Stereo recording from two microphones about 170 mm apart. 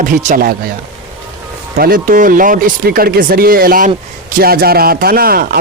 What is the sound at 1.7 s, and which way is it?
Speech, 60° right (ahead or behind).